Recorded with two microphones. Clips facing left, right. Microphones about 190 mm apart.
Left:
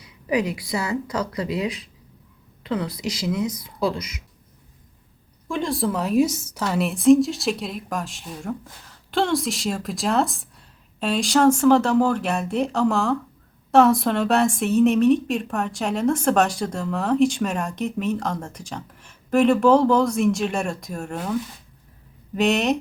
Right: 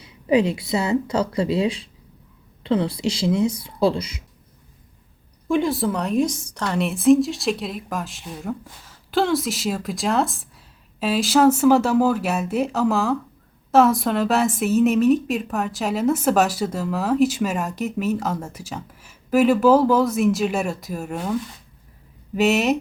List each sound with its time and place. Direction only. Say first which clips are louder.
0.0 s speech: right 5 dB; 25° right (ahead or behind)
5.6 s a woman's voice: right 1 dB; centre (ahead or behind)
22.4 s a woman's voice: right 2 dB; 5° right (ahead or behind)